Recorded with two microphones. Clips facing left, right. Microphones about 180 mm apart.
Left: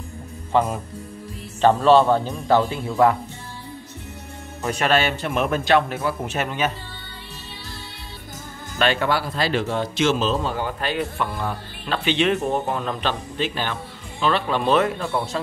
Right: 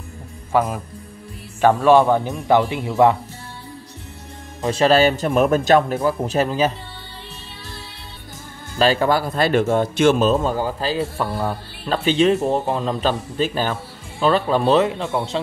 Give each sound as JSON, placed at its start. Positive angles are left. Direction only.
{"t": 0.5, "sound": "a man's voice", "side_deg": -10}
{"t": 4.6, "sound": "a man's voice", "side_deg": -30}
{"t": 8.7, "sound": "a man's voice", "side_deg": -35}
{"t": 12.4, "sound": "speech", "side_deg": -30}
{"t": 13.0, "sound": "a man's voice", "side_deg": -40}
{"t": 14.9, "sound": "speech", "side_deg": -20}